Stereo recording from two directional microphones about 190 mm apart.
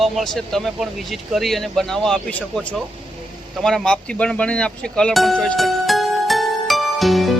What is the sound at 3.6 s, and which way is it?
Music, 5° left (ahead or behind).